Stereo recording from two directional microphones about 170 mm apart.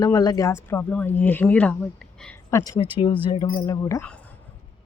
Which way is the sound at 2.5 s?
20° left (ahead or behind).